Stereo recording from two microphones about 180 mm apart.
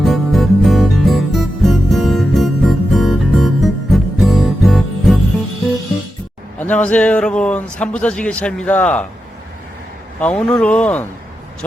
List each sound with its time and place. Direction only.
0.0 s music: centre (ahead or behind)
6.6 s speech: 10° left (ahead or behind)
10.2 s speech: 5° left (ahead or behind)